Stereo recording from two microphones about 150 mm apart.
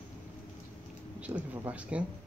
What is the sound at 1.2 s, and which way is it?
Speech, 10° right (ahead or behind).